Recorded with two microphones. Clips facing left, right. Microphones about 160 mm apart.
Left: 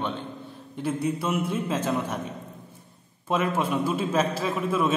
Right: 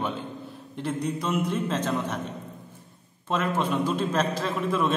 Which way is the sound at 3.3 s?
10° left (ahead or behind).